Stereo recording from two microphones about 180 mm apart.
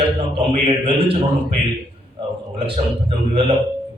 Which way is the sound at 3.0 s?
35° right (ahead or behind).